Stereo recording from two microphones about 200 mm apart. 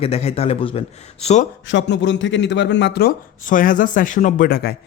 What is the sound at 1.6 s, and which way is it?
Speech, 65° left (ahead or behind).